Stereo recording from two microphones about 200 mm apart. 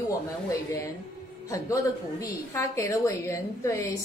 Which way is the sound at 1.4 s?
15° left (ahead or behind).